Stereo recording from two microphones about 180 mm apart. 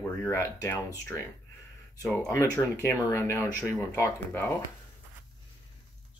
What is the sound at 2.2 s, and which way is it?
Speech, 15° left (ahead or behind).